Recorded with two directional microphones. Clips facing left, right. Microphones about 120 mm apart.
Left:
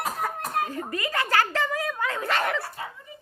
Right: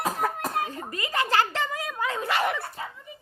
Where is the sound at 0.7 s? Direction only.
20° right (ahead or behind).